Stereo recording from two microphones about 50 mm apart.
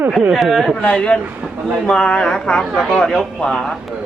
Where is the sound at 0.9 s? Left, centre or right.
Left.